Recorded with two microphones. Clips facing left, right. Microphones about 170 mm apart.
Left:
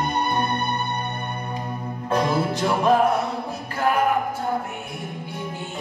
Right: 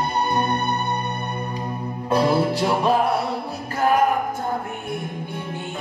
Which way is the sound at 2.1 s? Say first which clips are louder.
Right 3 dB; 35° right (ahead or behind).